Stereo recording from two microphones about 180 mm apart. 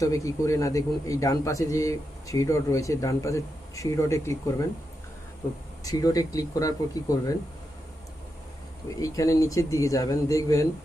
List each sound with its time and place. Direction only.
0.0 s a man's voice: 20° left (ahead or behind)
5.8 s speech: 20° left (ahead or behind)
9.0 s a man's voice: 20° left (ahead or behind)